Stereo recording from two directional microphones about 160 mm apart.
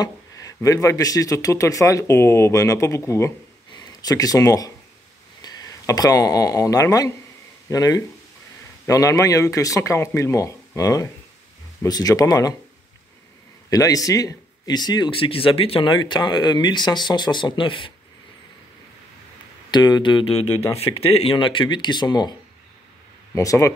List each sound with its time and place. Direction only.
0.0 s speech: 20° left (ahead or behind)
13.7 s speech: 20° left (ahead or behind)
19.7 s speech: 30° left (ahead or behind)
23.3 s speech: 20° left (ahead or behind)